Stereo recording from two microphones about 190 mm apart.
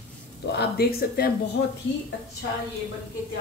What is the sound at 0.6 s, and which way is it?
Speech, 55° left (ahead or behind).